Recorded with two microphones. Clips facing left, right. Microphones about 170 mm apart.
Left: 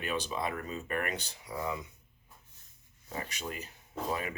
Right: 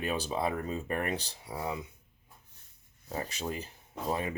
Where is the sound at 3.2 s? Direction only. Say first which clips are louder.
Right 4 dB; 30° right (ahead or behind).